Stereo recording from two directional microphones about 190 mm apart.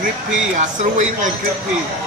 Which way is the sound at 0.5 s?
40° right (ahead or behind).